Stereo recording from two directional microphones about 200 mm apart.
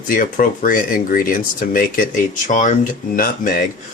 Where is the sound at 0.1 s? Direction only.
45° left (ahead or behind).